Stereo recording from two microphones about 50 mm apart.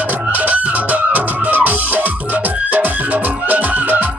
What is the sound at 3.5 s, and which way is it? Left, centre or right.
Music, right.